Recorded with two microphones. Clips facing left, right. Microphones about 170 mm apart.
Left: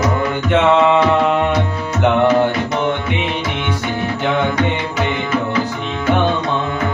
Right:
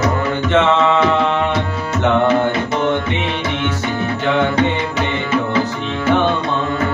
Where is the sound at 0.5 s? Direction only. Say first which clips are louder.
Left 2 dB; 10° left (ahead or behind).